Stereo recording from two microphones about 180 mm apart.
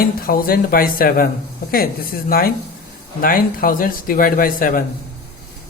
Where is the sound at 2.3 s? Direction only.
55° left (ahead or behind).